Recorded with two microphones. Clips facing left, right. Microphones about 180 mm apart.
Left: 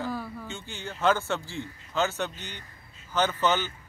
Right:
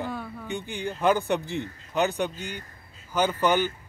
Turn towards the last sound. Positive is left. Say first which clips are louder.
# right 3 dB
turn(degrees=-10)  # may be behind; listen again after turning